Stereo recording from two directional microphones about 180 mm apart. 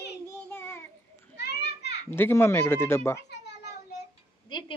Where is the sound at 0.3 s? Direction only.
10° left (ahead or behind).